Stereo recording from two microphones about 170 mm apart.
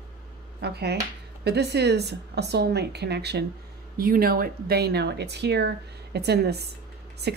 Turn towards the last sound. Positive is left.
turn(degrees=-75)  # may be behind; listen again after turning